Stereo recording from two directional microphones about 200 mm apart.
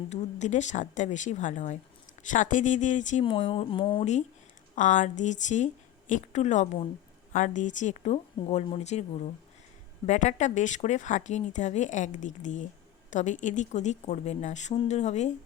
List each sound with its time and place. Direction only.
0.1 s speech: 35° left (ahead or behind)